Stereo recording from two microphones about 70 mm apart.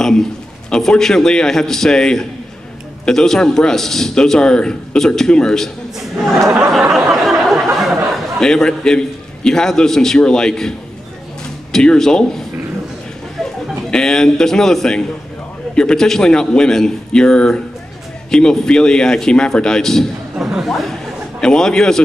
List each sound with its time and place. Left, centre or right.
0.7 s a man's voice: centre
6.9 s a sound: centre
8.1 s a man's voice: centre
11.7 s a man's voice: centre
13.4 s a man's voice: centre
20.3 s a man's voice: centre